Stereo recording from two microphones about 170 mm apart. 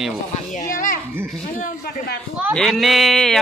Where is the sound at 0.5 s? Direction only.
50° left (ahead or behind).